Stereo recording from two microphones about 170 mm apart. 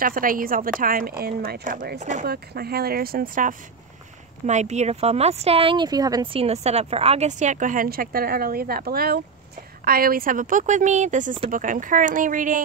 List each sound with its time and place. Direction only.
0.0 s a woman's voice: 55° right (ahead or behind)
2.2 s a woman's voice: 65° right (ahead or behind)
4.5 s speech: 40° right (ahead or behind); by 6.3 s 20° right (ahead or behind)
6.3 s a woman's voice: 35° right (ahead or behind)